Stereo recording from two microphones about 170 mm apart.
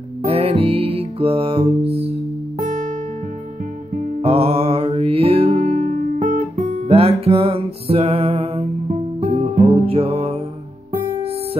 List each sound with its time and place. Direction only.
0.2 s music: 35° right (ahead or behind)
4.2 s music: 35° right (ahead or behind)